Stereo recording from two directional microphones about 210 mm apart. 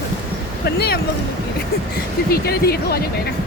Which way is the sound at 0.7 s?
50° left (ahead or behind).